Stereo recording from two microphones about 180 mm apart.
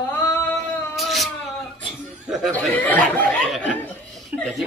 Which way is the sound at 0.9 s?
Centre (ahead or behind).